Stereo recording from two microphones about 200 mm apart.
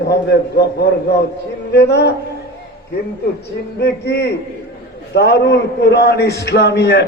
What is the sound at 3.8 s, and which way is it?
A man's voice, 55° left (ahead or behind).